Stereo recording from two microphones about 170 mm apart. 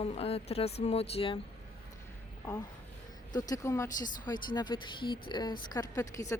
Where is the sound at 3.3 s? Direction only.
20° left (ahead or behind).